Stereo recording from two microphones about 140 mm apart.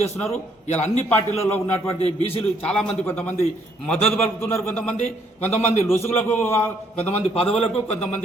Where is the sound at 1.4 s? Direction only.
15° left (ahead or behind).